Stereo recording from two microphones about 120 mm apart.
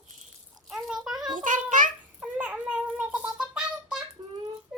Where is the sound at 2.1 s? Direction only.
15° right (ahead or behind).